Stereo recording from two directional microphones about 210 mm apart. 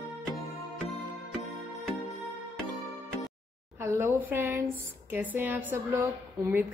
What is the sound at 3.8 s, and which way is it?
A woman's voice, 10° right (ahead or behind).